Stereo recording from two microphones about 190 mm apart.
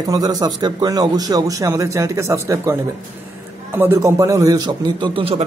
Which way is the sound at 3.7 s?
15° right (ahead or behind).